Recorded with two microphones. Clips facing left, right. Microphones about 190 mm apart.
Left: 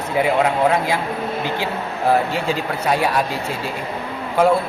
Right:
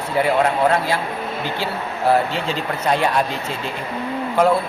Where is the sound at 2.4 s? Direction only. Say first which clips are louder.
Left 1 dB; 10° left (ahead or behind).